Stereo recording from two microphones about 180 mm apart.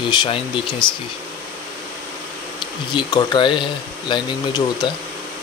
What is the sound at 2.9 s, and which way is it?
Speech, 25° left (ahead or behind).